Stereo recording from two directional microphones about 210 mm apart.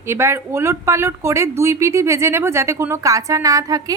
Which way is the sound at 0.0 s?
10° right (ahead or behind).